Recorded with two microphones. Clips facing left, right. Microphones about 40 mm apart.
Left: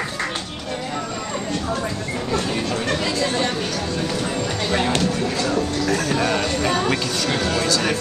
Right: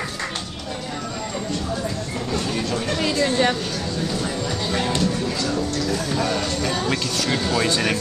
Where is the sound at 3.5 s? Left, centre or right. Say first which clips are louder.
Left 2 dB; left.